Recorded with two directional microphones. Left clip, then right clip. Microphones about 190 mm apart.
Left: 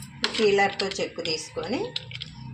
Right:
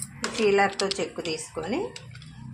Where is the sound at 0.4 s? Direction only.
5° left (ahead or behind).